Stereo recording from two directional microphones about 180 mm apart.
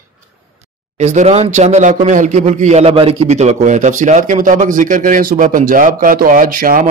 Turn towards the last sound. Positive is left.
turn(degrees=-50)  # may be behind; listen again after turning